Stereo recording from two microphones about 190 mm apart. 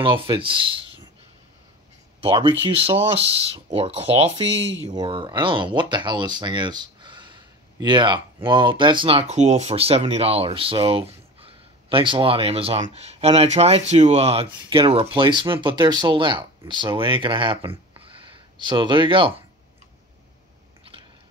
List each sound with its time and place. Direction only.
0.0 s speech: 25° right (ahead or behind)
2.2 s speech: 30° right (ahead or behind)
18.6 s speech: 25° right (ahead or behind)